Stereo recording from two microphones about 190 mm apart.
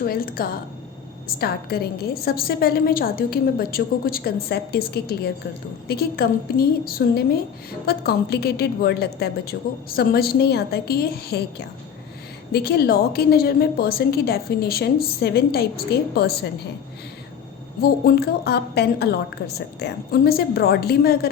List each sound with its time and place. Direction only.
0.0 s a woman's voice: 50° left (ahead or behind)
18.0 s a woman's voice: 55° left (ahead or behind)